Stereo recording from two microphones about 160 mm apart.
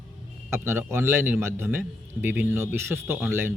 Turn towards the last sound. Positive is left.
turn(degrees=-15)  # may be behind; listen again after turning